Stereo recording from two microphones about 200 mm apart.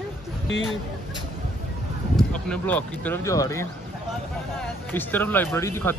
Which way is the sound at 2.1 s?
5° left (ahead or behind).